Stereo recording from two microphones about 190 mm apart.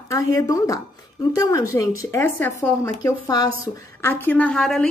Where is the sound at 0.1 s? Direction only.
15° left (ahead or behind).